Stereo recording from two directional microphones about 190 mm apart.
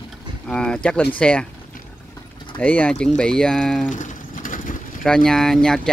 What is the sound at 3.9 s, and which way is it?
Sewing machine, 40° left (ahead or behind).